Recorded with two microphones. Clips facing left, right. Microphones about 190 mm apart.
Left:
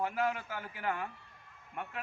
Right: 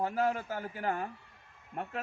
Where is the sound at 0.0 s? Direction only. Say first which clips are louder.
Right 3 dB; 40° right (ahead or behind).